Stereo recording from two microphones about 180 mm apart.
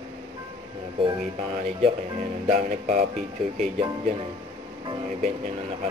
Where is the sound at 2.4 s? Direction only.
45° right (ahead or behind).